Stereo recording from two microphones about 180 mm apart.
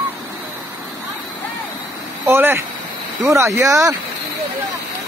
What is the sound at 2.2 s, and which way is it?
Speech, 15° right (ahead or behind).